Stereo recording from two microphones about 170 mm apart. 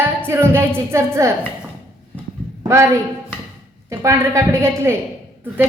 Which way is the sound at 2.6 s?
15° right (ahead or behind).